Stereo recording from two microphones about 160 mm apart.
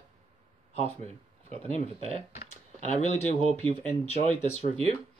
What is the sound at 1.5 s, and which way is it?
Speech, 40° right (ahead or behind).